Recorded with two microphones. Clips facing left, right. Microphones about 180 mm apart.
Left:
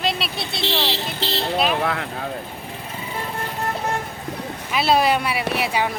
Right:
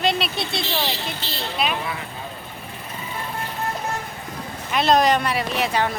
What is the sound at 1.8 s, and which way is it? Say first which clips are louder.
Speech: left 6 dB; 75° left (ahead or behind).